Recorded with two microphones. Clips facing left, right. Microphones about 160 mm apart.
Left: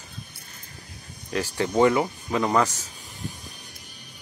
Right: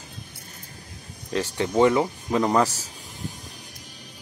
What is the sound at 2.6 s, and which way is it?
Speech, 35° right (ahead or behind).